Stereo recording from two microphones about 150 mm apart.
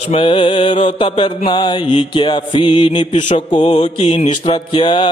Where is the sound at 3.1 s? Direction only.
50° left (ahead or behind).